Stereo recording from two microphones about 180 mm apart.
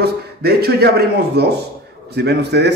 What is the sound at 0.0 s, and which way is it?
A man's voice, 60° right (ahead or behind).